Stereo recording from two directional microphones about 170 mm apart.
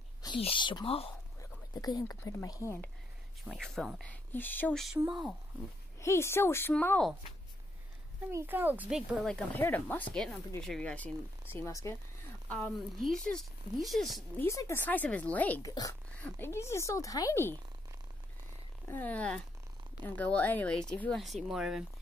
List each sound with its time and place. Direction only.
0.4 s speech: 30° left (ahead or behind)
1.4 s speech: 20° left (ahead or behind)
3.4 s speech: centre (ahead or behind)
4.9 s speech: 5° right (ahead or behind)
5.9 s speech: 15° left (ahead or behind)
8.3 s speech: 15° right (ahead or behind)
9.2 s speech: 10° left (ahead or behind)
11.5 s speech: 15° left (ahead or behind)
12.4 s speech: centre (ahead or behind)
14.4 s speech: 15° left (ahead or behind)
15.7 s speech: 20° left (ahead or behind)
18.9 s speech: 10° left (ahead or behind)